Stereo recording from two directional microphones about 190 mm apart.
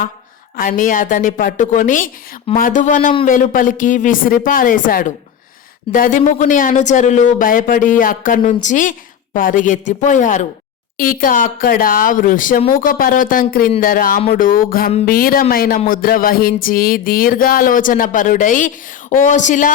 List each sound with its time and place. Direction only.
0.5 s music: 45° left (ahead or behind)
8.6 s a woman's voice: 40° left (ahead or behind)
10.9 s music: 45° left (ahead or behind)
19.2 s a woman's voice: 40° left (ahead or behind)